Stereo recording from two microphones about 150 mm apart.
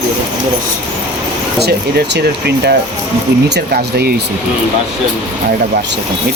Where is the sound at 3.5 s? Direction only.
90° right.